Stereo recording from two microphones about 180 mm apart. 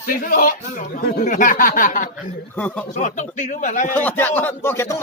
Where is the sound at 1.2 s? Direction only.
45° left (ahead or behind).